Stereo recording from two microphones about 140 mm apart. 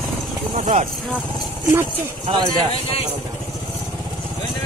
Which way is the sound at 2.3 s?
35° right (ahead or behind).